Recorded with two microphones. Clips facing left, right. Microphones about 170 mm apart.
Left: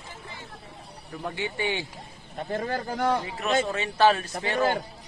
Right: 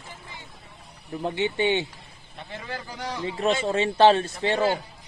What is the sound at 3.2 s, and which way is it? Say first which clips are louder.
Speech: right 2 dB; 30° right (ahead or behind).